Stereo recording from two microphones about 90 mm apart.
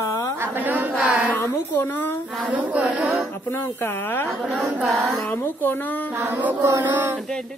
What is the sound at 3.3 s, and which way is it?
Speech, 25° left (ahead or behind).